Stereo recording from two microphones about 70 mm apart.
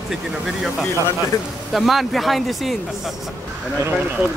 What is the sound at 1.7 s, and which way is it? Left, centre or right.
Speech, centre.